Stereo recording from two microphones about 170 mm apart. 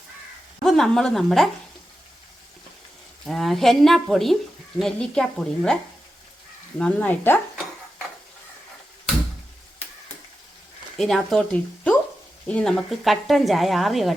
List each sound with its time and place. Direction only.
0.6 s a woman's voice: centre (ahead or behind)
3.2 s speech: centre (ahead or behind)
6.7 s dishes: 5° left (ahead or behind)
10.9 s speech: centre (ahead or behind)